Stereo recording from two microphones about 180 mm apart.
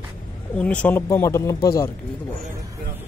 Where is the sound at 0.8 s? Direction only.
15° left (ahead or behind).